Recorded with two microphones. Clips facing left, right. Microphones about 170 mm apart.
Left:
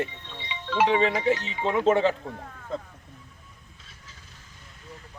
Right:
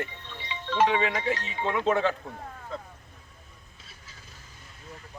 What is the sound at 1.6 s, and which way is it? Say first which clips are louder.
Speech: left 3 dB; 20° left (ahead or behind).